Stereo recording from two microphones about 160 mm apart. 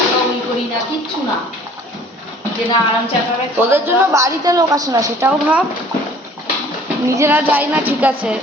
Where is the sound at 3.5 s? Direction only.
15° right (ahead or behind).